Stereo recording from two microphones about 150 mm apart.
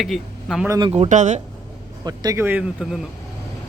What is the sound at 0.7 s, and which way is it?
Speech, 30° right (ahead or behind).